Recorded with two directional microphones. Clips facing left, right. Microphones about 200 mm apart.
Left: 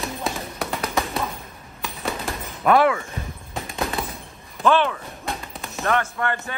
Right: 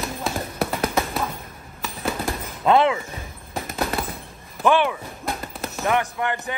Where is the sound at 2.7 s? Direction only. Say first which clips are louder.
Even; 20° right (ahead or behind).